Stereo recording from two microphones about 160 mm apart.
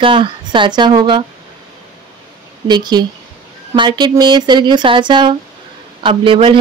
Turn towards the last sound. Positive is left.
turn(degrees=-35)  # may be behind; listen again after turning